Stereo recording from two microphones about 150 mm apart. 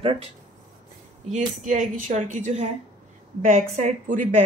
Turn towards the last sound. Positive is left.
turn(degrees=-55)  # may be behind; listen again after turning